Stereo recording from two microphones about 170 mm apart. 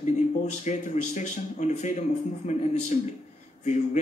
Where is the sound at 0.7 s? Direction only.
45° left (ahead or behind).